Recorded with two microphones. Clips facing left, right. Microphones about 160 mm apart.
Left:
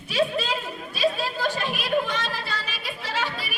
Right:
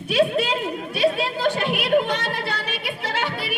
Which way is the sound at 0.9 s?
60° right (ahead or behind).